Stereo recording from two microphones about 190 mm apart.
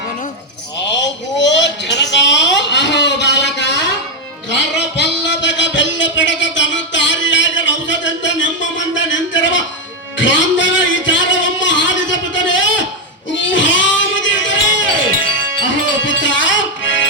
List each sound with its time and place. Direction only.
0.9 s a sound: 70° left (ahead or behind)
4.4 s music: 65° left (ahead or behind)
9.0 s a sound: 75° left (ahead or behind)
13.3 s music: 75° left (ahead or behind)
15.1 s music: 50° right (ahead or behind)
16.0 s music: 75° left (ahead or behind)